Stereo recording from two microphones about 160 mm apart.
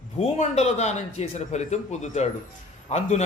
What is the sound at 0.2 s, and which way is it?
A man's voice, 45° left (ahead or behind).